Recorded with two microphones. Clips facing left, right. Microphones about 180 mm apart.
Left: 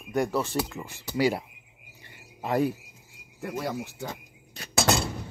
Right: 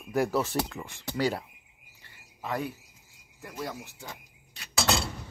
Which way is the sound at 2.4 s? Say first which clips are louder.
Left 7 dB; 35° left (ahead or behind).